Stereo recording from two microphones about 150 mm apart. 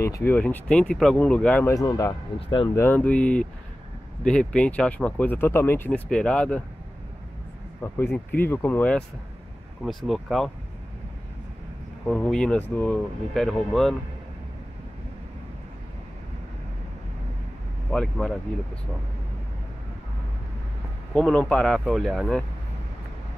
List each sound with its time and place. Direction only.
0.0 s speech: 15° left (ahead or behind)
1.7 s speech: 20° left (ahead or behind)
7.8 s speech: 15° left (ahead or behind)
10.0 s speech: centre (ahead or behind)
12.1 s speech: 5° left (ahead or behind)
17.9 s speech: 5° left (ahead or behind)
21.1 s speech: 10° left (ahead or behind)